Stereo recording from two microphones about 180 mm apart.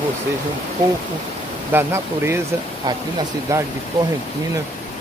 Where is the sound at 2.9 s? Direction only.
25° right (ahead or behind).